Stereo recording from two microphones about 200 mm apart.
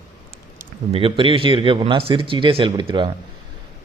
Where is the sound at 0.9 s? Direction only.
25° right (ahead or behind).